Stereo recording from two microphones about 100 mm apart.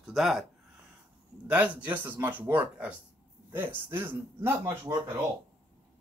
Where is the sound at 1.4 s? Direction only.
15° right (ahead or behind).